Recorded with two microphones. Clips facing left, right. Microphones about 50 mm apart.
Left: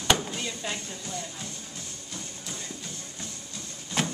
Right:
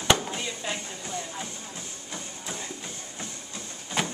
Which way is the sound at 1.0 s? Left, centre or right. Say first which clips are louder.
Right 2 dB; right.